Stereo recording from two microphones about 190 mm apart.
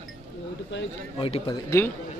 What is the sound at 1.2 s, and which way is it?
Speech, 30° left (ahead or behind).